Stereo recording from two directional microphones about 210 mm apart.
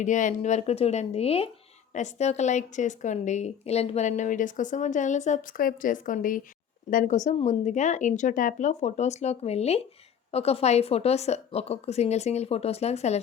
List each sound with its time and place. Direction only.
0.0 s a woman's voice: 35° left (ahead or behind)